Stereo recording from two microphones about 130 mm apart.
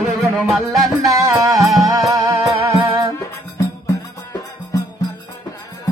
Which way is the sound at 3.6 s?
25° left (ahead or behind).